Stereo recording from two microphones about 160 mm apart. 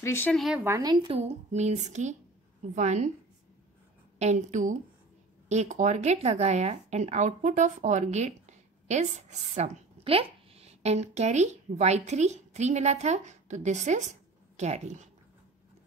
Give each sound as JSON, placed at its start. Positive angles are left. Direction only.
{"t": 0.0, "sound": "speech", "side_deg": 15}
{"t": 0.4, "sound": "speech", "side_deg": 0}
{"t": 0.7, "sound": "a woman's voice", "side_deg": -20}
{"t": 1.0, "sound": "speech", "side_deg": -40}
{"t": 4.2, "sound": "speech", "side_deg": -45}